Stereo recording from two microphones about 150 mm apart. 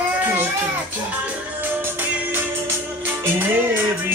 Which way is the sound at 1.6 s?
15° right (ahead or behind).